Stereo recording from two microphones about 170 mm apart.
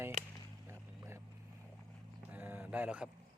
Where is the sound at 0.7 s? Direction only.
15° right (ahead or behind).